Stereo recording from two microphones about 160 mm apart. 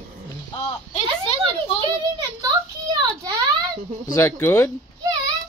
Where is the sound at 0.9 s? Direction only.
40° left (ahead or behind).